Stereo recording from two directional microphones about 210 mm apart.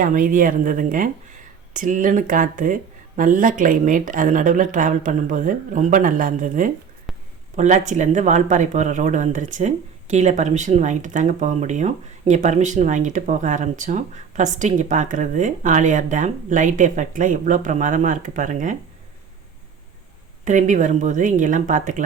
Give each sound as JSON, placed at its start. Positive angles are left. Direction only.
{"t": 0.0, "sound": "speech", "side_deg": -40}
{"t": 20.4, "sound": "speech", "side_deg": -35}